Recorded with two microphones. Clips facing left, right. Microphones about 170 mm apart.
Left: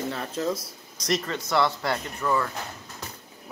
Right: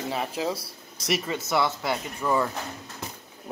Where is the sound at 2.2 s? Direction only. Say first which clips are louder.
Right 1 dB; 15° right (ahead or behind).